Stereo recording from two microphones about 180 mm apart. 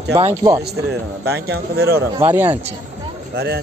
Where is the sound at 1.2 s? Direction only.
65° right (ahead or behind).